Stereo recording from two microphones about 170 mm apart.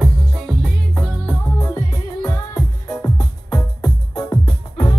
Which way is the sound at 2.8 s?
20° left (ahead or behind).